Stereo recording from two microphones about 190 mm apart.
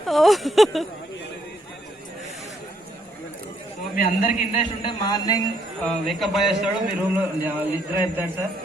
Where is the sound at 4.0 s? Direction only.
45° left (ahead or behind).